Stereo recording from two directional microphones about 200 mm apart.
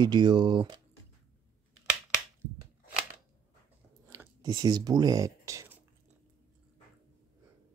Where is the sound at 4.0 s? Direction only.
15° right (ahead or behind).